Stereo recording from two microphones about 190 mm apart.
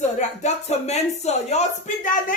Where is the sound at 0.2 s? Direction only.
35° left (ahead or behind).